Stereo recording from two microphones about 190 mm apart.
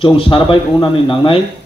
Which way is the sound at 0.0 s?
25° left (ahead or behind).